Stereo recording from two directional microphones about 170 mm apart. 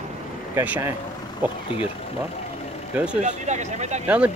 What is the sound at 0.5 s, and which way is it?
Speech, 10° right (ahead or behind).